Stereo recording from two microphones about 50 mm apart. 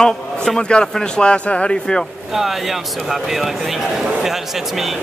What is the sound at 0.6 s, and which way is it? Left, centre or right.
Speech, centre.